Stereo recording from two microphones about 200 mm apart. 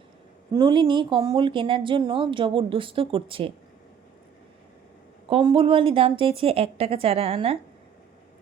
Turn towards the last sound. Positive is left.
turn(degrees=-30)  # may be behind; listen again after turning